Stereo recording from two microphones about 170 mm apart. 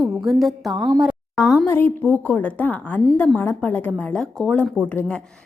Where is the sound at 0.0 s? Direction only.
Centre (ahead or behind).